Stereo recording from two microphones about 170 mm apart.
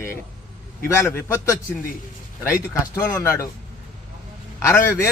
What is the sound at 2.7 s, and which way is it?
Speech, 20° left (ahead or behind).